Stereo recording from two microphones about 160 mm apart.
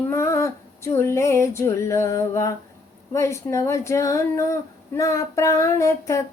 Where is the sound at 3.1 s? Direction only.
20° left (ahead or behind).